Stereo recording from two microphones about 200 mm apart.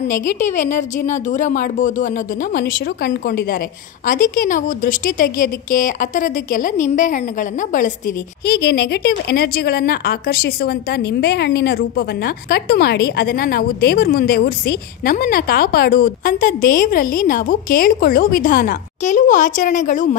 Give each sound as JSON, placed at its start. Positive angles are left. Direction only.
{"t": 0.1, "sound": "a woman's voice", "side_deg": 40}
{"t": 2.5, "sound": "a woman's voice", "side_deg": 55}